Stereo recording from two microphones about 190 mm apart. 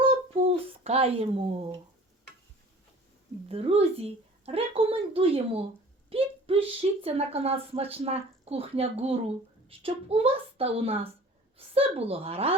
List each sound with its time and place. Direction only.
0.3 s speech: 30° right (ahead or behind)
3.5 s speech: 30° right (ahead or behind)